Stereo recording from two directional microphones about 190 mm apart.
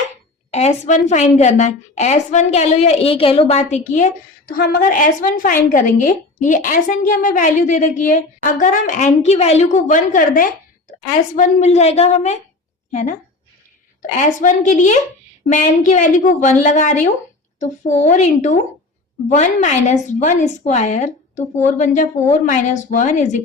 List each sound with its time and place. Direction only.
0.5 s a woman's voice: 35° left (ahead or behind)
3.9 s a woman's voice: 45° left (ahead or behind)
14.2 s a woman's voice: 40° left (ahead or behind)